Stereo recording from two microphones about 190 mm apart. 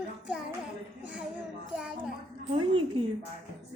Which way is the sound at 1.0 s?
5° right (ahead or behind).